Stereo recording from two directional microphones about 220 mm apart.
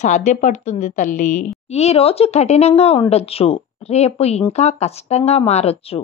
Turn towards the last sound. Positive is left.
turn(degrees=25)  # may be behind; listen again after turning